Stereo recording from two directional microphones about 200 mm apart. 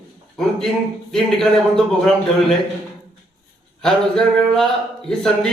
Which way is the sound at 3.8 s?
5° left (ahead or behind).